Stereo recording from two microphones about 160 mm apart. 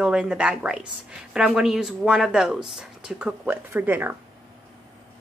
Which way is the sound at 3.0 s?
5° right (ahead or behind).